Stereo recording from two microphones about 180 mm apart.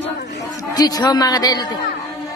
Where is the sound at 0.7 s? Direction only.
20° left (ahead or behind).